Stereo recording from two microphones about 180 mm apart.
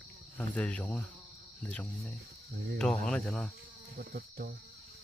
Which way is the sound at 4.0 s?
55° right (ahead or behind).